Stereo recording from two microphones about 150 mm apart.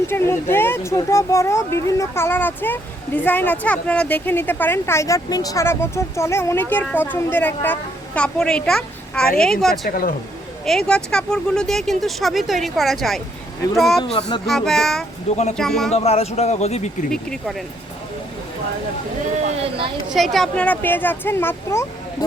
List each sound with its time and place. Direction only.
0.1 s speech: 15° left (ahead or behind)
9.6 s speech: 75° left (ahead or behind)
10.7 s speech: 5° left (ahead or behind)
14.2 s speech: 30° left (ahead or behind)
14.4 s speech: centre (ahead or behind)
15.9 s speech: 45° left (ahead or behind)
17.1 s speech: centre (ahead or behind)
19.5 s speech: 40° right (ahead or behind)
20.1 s speech: centre (ahead or behind); by 21.8 s 20° left (ahead or behind)